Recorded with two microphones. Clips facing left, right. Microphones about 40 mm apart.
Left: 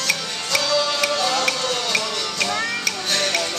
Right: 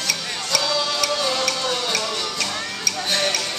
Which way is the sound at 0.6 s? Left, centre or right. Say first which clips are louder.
Left 3 dB; centre.